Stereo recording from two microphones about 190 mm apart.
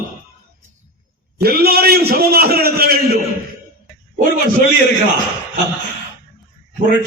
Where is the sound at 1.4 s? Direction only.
55° right (ahead or behind).